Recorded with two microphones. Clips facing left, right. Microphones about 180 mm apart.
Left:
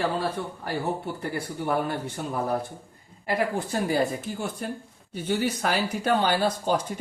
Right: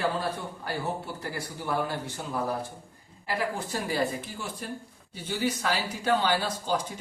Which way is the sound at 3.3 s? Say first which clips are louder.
Left 4 dB; 55° left (ahead or behind).